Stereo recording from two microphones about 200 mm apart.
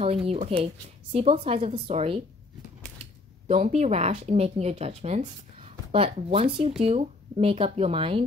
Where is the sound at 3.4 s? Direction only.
35° right (ahead or behind).